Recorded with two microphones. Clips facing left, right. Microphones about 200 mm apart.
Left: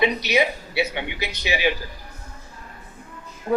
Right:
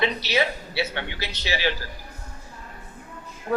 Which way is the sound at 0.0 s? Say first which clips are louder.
Left 3 dB; 15° left (ahead or behind).